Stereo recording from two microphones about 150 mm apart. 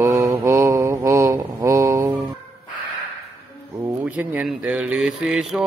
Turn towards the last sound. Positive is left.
turn(degrees=0)  # may be behind; listen again after turning